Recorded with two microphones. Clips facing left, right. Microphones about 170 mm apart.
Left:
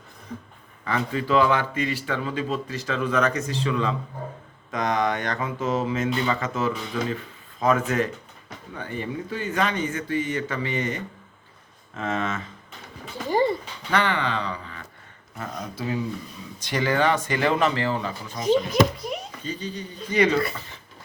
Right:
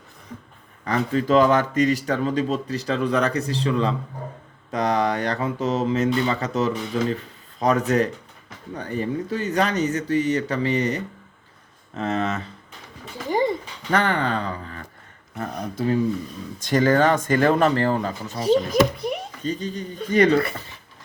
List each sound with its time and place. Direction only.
0.9 s speech: 40° right (ahead or behind)
13.3 s a sound: 15° right (ahead or behind)
13.9 s speech: 45° right (ahead or behind)
18.9 s speech: 60° right (ahead or behind)